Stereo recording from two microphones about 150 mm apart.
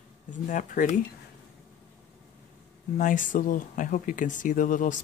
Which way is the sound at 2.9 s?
60° left (ahead or behind).